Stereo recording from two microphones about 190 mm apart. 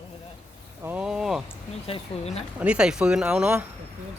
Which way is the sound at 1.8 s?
30° left (ahead or behind).